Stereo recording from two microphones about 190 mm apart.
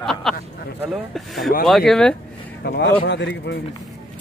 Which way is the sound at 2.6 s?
65° left (ahead or behind).